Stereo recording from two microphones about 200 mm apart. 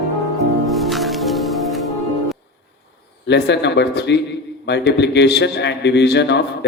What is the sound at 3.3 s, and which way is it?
A man's voice, 60° left (ahead or behind).